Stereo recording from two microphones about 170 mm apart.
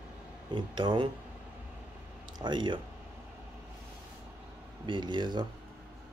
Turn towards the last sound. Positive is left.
turn(degrees=-25)  # may be behind; listen again after turning